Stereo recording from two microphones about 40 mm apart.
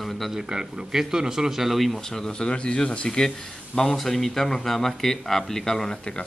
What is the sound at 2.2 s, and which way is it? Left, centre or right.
Speech, left.